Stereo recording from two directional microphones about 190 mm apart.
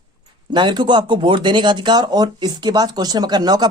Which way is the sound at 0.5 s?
25° right (ahead or behind).